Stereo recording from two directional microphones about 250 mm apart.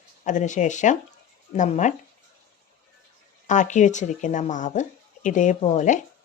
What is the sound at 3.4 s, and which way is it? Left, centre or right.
Speech, left.